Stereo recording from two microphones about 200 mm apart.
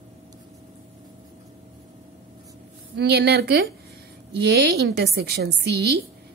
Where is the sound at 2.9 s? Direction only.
55° right (ahead or behind).